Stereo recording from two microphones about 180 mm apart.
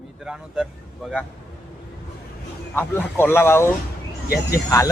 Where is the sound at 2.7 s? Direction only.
10° left (ahead or behind).